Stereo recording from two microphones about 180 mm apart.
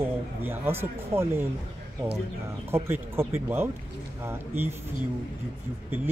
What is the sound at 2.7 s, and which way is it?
Speech, 15° right (ahead or behind).